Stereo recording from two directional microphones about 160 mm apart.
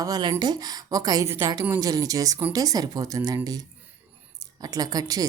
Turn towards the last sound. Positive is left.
turn(degrees=-25)  # may be behind; listen again after turning